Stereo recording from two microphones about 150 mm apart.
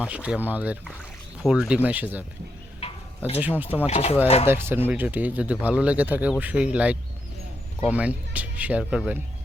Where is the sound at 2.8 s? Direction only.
45° left (ahead or behind).